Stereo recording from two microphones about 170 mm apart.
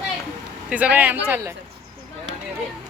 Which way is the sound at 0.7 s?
10° right (ahead or behind).